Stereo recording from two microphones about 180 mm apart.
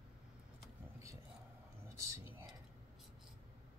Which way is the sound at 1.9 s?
15° right (ahead or behind).